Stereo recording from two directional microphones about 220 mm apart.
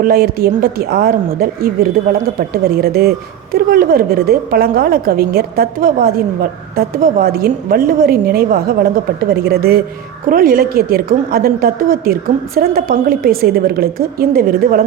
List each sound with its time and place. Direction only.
0.0 s speech: 45° right (ahead or behind)